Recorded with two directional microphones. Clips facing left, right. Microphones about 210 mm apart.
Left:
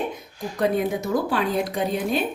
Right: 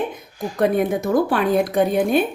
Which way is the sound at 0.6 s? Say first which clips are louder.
Right 4 dB; 55° right (ahead or behind).